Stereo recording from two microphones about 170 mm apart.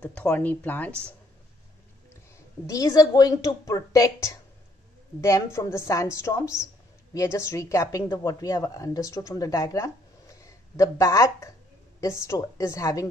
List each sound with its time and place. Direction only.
0.0 s speech: 5° left (ahead or behind)
2.6 s a woman's voice: 20° left (ahead or behind)